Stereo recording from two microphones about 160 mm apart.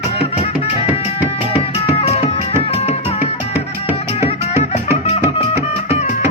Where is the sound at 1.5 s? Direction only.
40° left (ahead or behind).